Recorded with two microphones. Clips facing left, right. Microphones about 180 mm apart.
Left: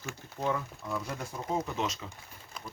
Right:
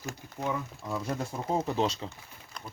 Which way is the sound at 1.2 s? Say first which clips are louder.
Right 3 dB; 35° right (ahead or behind).